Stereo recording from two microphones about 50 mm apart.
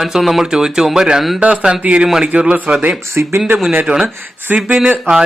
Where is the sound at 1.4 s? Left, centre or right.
Right.